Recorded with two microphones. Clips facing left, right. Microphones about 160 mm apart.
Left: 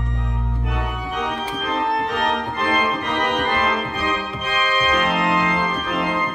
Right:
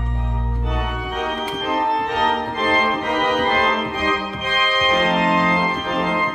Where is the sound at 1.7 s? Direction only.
35° right (ahead or behind).